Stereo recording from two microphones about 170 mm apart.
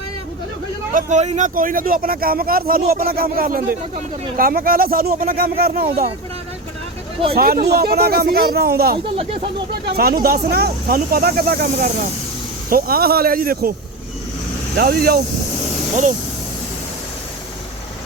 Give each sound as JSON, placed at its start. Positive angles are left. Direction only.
{"t": 0.9, "sound": "speech", "side_deg": -40}
{"t": 7.3, "sound": "speech", "side_deg": -65}
{"t": 9.1, "sound": "speech", "side_deg": -35}
{"t": 9.8, "sound": "speech", "side_deg": -65}
{"t": 14.8, "sound": "speech", "side_deg": -65}